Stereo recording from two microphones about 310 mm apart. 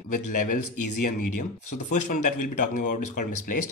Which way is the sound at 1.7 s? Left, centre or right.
Left.